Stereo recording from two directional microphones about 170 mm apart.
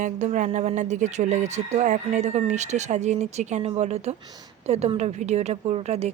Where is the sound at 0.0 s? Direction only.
45° right (ahead or behind).